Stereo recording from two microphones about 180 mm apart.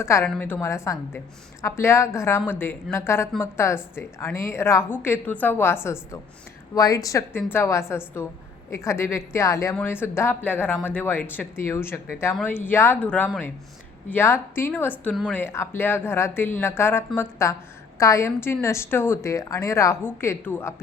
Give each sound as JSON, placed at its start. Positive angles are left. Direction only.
{"t": 0.0, "sound": "speech", "side_deg": 15}